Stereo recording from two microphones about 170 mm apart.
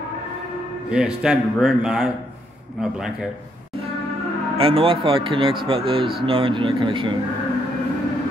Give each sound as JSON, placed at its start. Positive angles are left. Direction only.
{"t": 0.8, "sound": "speech", "side_deg": -5}
{"t": 4.6, "sound": "speech", "side_deg": -35}